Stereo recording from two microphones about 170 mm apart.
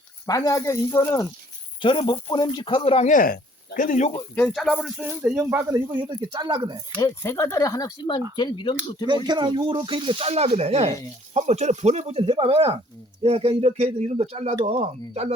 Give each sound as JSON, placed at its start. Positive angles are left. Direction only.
{"t": 0.3, "sound": "speech", "side_deg": 20}
{"t": 1.8, "sound": "speech", "side_deg": 30}
{"t": 3.1, "sound": "speech", "side_deg": 55}
{"t": 4.4, "sound": "speech", "side_deg": 0}
{"t": 6.1, "sound": "speech", "side_deg": -30}
{"t": 7.0, "sound": "speech", "side_deg": 15}
{"t": 9.0, "sound": "speech", "side_deg": -25}